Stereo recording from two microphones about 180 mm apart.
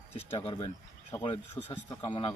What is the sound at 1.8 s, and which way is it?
Speech, 25° left (ahead or behind).